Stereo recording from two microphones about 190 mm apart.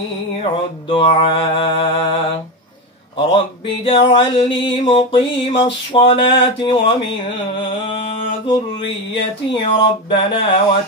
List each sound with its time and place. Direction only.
0.4 s music: 30° left (ahead or behind)
3.2 s music: 25° left (ahead or behind)
7.6 s a sound: 25° left (ahead or behind)
9.1 s music: 25° left (ahead or behind)